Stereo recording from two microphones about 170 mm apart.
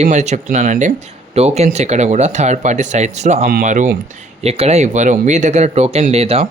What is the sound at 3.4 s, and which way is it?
Speech, 60° right (ahead or behind).